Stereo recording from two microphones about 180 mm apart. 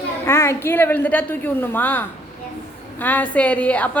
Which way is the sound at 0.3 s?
15° left (ahead or behind).